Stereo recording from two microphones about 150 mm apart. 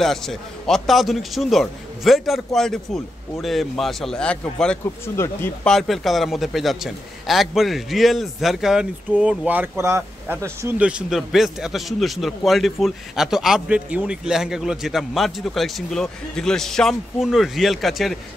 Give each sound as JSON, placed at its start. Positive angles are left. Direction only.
{"t": 0.0, "sound": "a man's voice", "side_deg": 0}
{"t": 5.0, "sound": "speech", "side_deg": 15}
{"t": 5.7, "sound": "a man's voice", "side_deg": 0}